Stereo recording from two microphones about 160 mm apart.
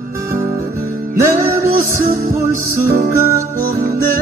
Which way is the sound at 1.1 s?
15° right (ahead or behind).